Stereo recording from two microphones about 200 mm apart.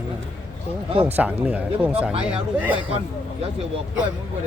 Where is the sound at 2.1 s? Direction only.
30° right (ahead or behind).